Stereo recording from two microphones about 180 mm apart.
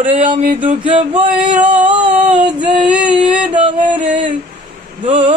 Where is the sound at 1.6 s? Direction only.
5° right (ahead or behind).